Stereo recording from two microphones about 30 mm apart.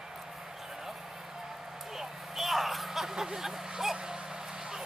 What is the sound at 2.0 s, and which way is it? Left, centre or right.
Vehicle, centre.